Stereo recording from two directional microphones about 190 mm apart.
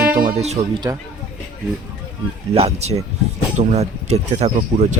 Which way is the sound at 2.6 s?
35° right (ahead or behind).